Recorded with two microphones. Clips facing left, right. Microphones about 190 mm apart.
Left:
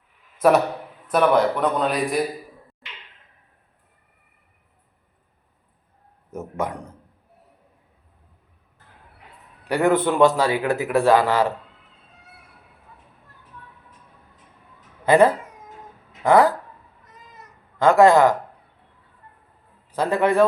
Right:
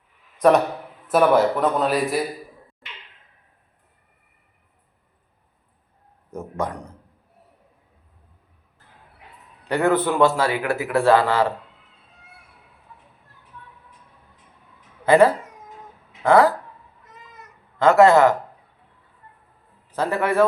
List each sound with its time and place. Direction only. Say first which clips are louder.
0.3 s a man's voice: right 1 dB; 5° left (ahead or behind)
6.3 s a sound: even; 5° left (ahead or behind)
9.6 s a man's voice: left 1 dB; 15° left (ahead or behind)
15.0 s speech: right 1 dB; 20° left (ahead or behind)
17.7 s a man's voice: even; 15° left (ahead or behind)
19.9 s a man's voice: left 2 dB; 15° left (ahead or behind)